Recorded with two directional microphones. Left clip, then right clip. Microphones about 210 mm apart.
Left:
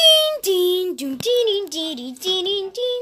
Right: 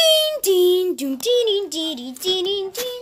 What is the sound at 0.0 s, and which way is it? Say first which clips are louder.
Child singing: left 2 dB; centre (ahead or behind).